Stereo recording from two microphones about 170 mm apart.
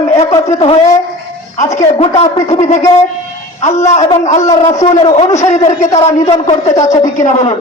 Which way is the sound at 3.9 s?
40° left (ahead or behind).